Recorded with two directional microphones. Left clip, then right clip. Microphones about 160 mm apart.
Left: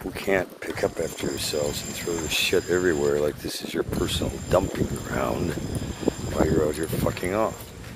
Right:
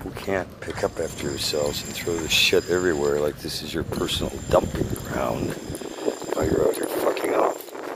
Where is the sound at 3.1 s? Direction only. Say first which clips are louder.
Right 1 dB; 25° left (ahead or behind).